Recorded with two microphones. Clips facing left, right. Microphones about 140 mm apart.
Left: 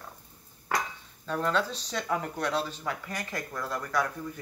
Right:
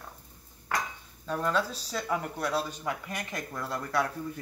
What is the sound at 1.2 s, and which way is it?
Speech, 10° right (ahead or behind).